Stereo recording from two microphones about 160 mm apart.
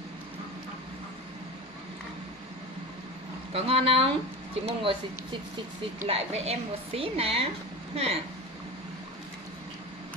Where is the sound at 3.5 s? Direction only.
40° right (ahead or behind).